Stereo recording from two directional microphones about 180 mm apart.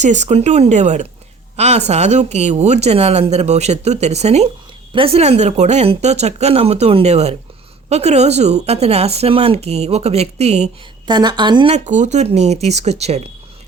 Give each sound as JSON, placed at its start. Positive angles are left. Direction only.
{"t": 0.0, "sound": "speech", "side_deg": -40}
{"t": 11.1, "sound": "a woman's voice", "side_deg": -25}
{"t": 11.7, "sound": "speech", "side_deg": -40}